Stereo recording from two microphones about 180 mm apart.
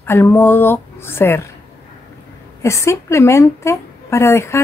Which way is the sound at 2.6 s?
15° left (ahead or behind).